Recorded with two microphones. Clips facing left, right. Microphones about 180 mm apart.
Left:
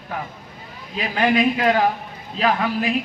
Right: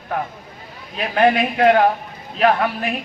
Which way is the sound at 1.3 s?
55° right (ahead or behind).